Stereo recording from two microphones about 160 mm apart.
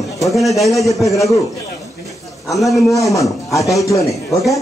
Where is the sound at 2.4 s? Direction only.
Centre (ahead or behind).